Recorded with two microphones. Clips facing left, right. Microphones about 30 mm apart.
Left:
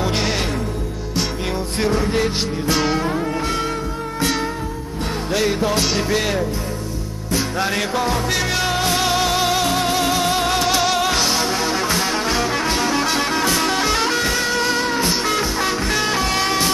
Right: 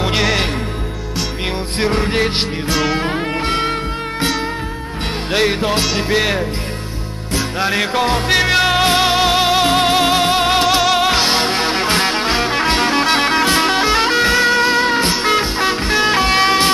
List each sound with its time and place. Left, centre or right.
1.8 s music: right
5.3 s music: right
5.8 s music: right
7.5 s music: right
7.9 s music: right